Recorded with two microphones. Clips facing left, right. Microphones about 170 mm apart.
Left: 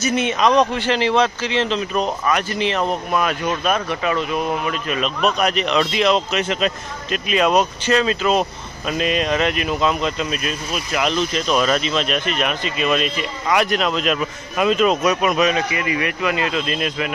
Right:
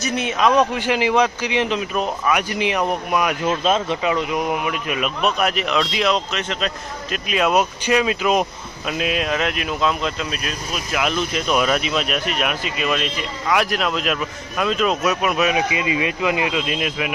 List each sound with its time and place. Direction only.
0.0 s a man's voice: centre (ahead or behind)
3.4 s a man's voice: 25° right (ahead or behind); by 15.6 s 5° right (ahead or behind)
15.7 s a man's voice: 20° right (ahead or behind)